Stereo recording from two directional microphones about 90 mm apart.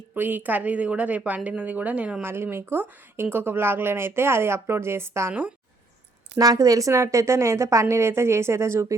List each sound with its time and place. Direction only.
0.1 s a woman's voice: 20° right (ahead or behind)
2.2 s speech: 25° right (ahead or behind)
5.3 s a woman's voice: 15° right (ahead or behind)
6.4 s a woman's voice: 40° right (ahead or behind)